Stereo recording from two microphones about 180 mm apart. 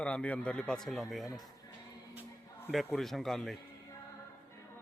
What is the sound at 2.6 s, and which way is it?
Speech, centre (ahead or behind).